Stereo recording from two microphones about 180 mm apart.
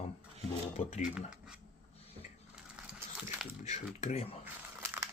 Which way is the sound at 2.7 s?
5° right (ahead or behind).